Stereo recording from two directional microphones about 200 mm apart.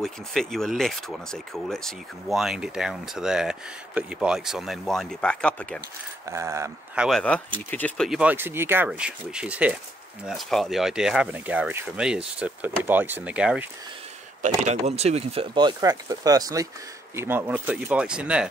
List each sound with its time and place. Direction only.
0.0 s speech: centre (ahead or behind)
6.2 s speech: 15° right (ahead or behind)
7.1 s speech: 5° left (ahead or behind)
14.6 s speech: 35° right (ahead or behind); by 18.5 s 5° right (ahead or behind)